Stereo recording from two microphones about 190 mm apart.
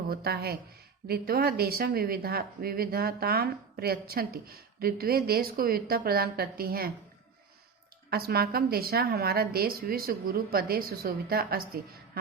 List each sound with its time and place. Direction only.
0.1 s speech: 55° right (ahead or behind)
8.1 s speech: 55° right (ahead or behind)